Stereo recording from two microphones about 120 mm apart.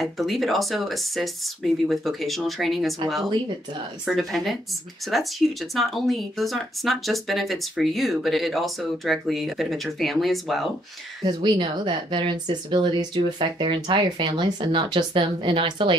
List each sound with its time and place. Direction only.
0.0 s speech: centre (ahead or behind)
4.0 s speech: centre (ahead or behind)
11.2 s speech: 40° right (ahead or behind)